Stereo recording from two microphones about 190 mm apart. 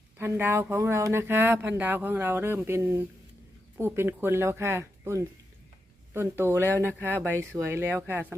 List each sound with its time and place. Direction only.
0.2 s speech: 10° right (ahead or behind)